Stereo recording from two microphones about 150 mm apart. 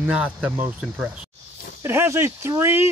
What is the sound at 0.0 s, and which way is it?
Speech, 5° right (ahead or behind).